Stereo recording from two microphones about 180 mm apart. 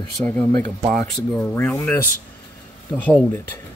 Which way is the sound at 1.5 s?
5° left (ahead or behind).